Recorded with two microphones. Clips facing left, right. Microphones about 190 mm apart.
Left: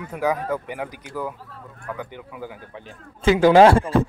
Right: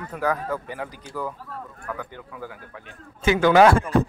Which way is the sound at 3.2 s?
30° left (ahead or behind).